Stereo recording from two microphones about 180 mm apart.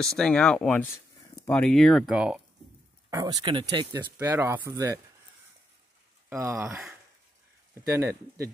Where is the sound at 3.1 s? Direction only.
20° right (ahead or behind).